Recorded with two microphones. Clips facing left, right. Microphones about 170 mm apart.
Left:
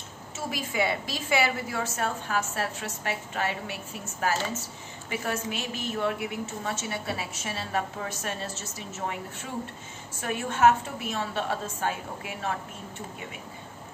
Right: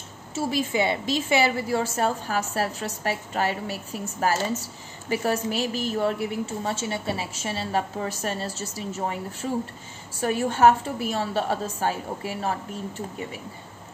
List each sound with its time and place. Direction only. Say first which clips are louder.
0.3 s a woman's voice: right 8 dB; 30° right (ahead or behind)